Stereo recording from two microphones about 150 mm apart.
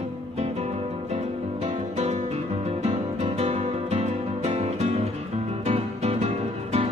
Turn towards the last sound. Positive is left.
turn(degrees=-45)  # may be behind; listen again after turning